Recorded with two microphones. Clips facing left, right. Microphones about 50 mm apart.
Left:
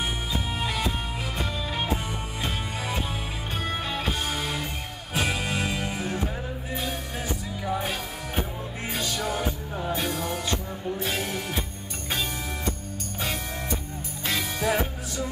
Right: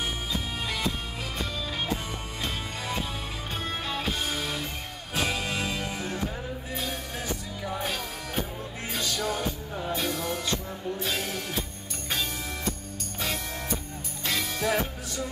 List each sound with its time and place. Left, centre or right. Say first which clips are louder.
0.6 s music: left 2 dB; centre
3.6 s music: left 2 dB; centre
14.2 s music: left 2 dB; centre